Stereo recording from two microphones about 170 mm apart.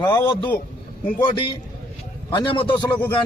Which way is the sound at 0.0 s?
25° left (ahead or behind).